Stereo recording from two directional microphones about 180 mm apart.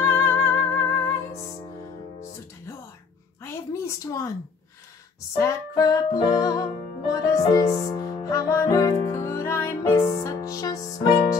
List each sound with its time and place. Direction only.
0.0 s music: 15° left (ahead or behind)
3.4 s a sound: 15° left (ahead or behind)
5.4 s music: 20° left (ahead or behind)